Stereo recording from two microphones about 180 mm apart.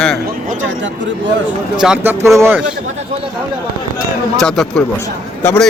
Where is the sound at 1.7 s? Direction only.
5° right (ahead or behind).